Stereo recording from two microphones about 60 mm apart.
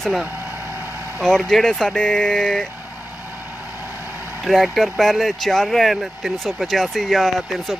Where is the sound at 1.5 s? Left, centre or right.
Centre.